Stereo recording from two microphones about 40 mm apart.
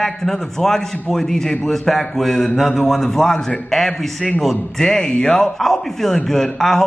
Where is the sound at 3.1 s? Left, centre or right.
Centre.